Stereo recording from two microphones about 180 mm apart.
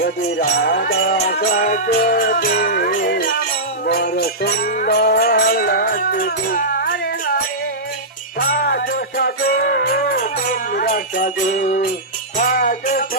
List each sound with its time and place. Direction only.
0.0 s music: 60° left (ahead or behind)
1.4 s music: 50° left (ahead or behind)
3.8 s jingle bell: 65° left (ahead or behind)
8.4 s music: 55° left (ahead or behind)
10.8 s jingle bell: 45° left (ahead or behind)
12.4 s jingle bell: 55° left (ahead or behind)